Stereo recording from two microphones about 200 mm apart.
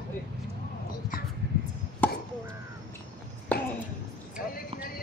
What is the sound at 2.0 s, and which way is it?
Chop, 10° left (ahead or behind).